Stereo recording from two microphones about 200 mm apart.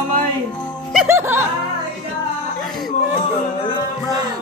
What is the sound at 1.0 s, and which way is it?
Music, 10° right (ahead or behind).